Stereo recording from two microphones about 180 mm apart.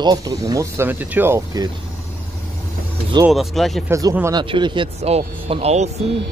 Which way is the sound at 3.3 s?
Centre (ahead or behind).